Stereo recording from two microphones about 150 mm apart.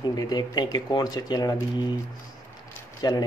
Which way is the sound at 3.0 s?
25° left (ahead or behind).